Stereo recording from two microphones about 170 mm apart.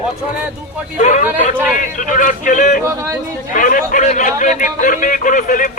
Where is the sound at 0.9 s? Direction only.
45° left (ahead or behind).